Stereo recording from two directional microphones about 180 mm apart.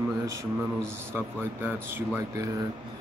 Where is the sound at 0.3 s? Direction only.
15° right (ahead or behind).